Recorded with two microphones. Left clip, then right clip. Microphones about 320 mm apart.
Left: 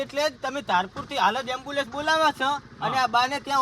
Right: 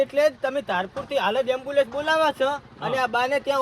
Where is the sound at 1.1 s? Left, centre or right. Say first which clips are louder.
Right 1 dB; centre.